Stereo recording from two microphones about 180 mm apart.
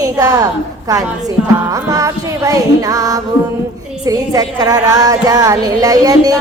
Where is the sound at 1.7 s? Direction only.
20° right (ahead or behind).